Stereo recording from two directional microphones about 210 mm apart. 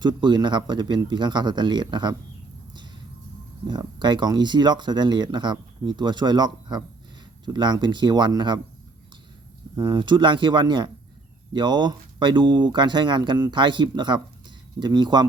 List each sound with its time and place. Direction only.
0.0 s speech: 20° right (ahead or behind)
3.7 s speech: 20° right (ahead or behind)
9.7 s speech: 20° right (ahead or behind)